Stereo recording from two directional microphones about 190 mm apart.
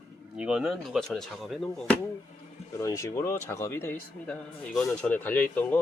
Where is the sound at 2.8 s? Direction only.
15° left (ahead or behind).